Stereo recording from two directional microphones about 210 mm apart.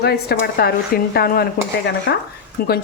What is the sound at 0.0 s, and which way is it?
Speech, 50° left (ahead or behind).